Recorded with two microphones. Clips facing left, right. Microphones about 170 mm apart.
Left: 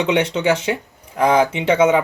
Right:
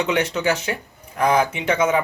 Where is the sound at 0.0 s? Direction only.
25° left (ahead or behind).